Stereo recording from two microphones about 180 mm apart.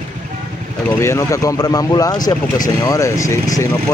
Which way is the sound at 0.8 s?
15° left (ahead or behind).